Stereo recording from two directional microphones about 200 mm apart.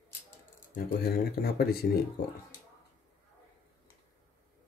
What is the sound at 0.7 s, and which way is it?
Speech, 50° left (ahead or behind).